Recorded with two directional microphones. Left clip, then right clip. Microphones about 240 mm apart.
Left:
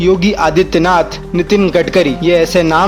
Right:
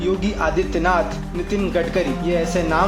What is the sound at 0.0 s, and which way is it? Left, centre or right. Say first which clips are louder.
A man's voice: left 10 dB; left.